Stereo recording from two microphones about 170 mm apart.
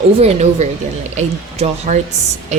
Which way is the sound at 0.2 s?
40° right (ahead or behind).